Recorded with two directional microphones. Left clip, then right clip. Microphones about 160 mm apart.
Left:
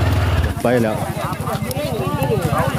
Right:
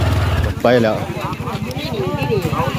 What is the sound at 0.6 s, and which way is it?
Speech, centre (ahead or behind).